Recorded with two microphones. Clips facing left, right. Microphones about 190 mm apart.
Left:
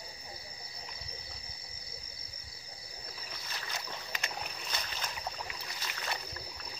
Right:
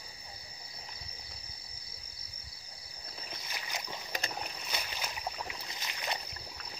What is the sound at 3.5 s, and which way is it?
Boat, 15° right (ahead or behind).